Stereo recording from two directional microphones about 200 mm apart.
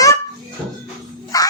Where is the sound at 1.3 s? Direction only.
20° left (ahead or behind).